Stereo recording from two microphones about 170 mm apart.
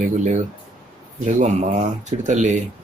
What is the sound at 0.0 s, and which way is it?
Speech, 50° right (ahead or behind).